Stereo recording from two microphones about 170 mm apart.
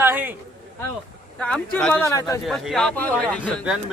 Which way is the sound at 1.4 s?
5° left (ahead or behind).